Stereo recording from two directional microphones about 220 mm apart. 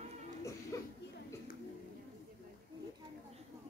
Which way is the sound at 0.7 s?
15° left (ahead or behind).